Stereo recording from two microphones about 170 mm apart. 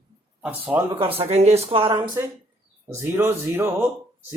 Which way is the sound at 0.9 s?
35° right (ahead or behind).